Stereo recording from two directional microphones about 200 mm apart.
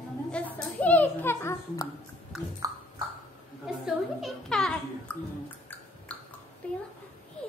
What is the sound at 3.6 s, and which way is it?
A child's voice, centre (ahead or behind).